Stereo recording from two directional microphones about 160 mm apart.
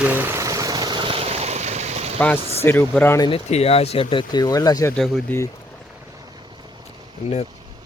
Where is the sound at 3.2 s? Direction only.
35° left (ahead or behind); by 4.9 s 20° left (ahead or behind).